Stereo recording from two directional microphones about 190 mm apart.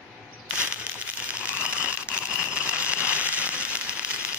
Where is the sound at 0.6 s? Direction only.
5° right (ahead or behind).